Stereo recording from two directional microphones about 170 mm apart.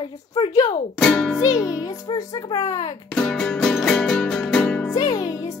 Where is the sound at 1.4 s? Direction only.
20° left (ahead or behind).